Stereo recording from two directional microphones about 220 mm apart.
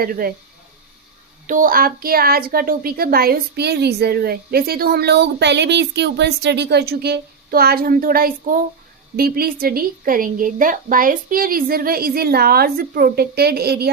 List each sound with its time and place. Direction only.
0.0 s speech: 40° right (ahead or behind)
1.5 s a woman's voice: 40° right (ahead or behind)